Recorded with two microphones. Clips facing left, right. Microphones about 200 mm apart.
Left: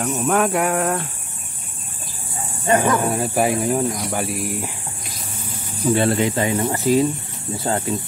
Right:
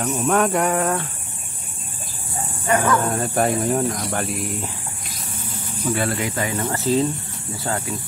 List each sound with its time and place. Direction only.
0.0 s cricket: centre (ahead or behind)
2.6 s speech: 25° left (ahead or behind)
3.0 s speech: 10° left (ahead or behind)
5.9 s speech: 25° left (ahead or behind)